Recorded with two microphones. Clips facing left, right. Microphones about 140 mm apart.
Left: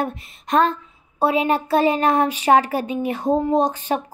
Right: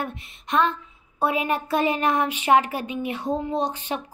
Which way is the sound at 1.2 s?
30° left (ahead or behind).